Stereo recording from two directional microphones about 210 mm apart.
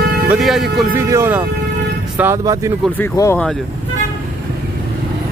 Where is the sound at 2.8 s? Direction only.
10° left (ahead or behind).